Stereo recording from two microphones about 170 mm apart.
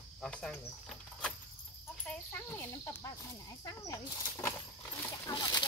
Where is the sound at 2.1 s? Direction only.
10° left (ahead or behind).